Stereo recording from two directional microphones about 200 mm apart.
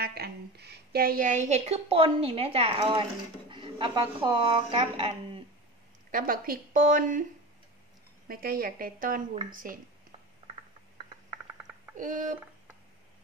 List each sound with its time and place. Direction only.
0.0 s a woman's voice: 50° right (ahead or behind); by 5.4 s 25° right (ahead or behind)
6.1 s a woman's voice: 45° right (ahead or behind)
8.3 s a woman's voice: 45° right (ahead or behind)
12.0 s speech: 40° right (ahead or behind)